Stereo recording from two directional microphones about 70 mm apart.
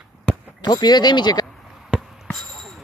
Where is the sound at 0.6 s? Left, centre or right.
Left.